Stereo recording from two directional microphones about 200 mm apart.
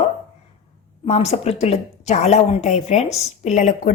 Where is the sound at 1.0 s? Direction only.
30° left (ahead or behind).